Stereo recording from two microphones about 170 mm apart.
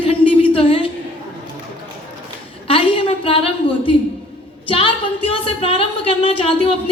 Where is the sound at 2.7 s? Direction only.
35° left (ahead or behind).